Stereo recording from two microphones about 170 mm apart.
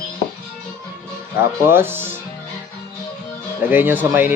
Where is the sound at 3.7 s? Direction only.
10° right (ahead or behind).